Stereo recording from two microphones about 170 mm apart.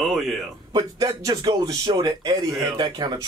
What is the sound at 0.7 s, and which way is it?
Speech, 25° right (ahead or behind).